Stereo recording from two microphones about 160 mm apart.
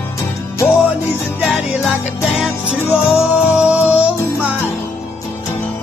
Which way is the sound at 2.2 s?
Centre (ahead or behind).